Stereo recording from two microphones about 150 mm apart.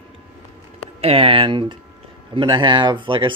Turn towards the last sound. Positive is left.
turn(degrees=-35)  # may be behind; listen again after turning